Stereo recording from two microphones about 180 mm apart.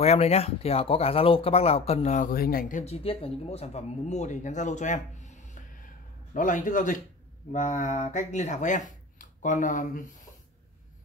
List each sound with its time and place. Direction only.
0.0 s speech: 35° left (ahead or behind); by 2.8 s 55° left (ahead or behind)
2.8 s speech: 35° left (ahead or behind)